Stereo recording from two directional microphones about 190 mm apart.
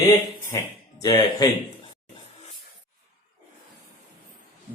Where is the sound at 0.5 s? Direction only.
15° left (ahead or behind).